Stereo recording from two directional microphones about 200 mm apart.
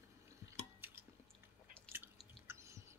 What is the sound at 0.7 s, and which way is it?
Chewing, 10° right (ahead or behind).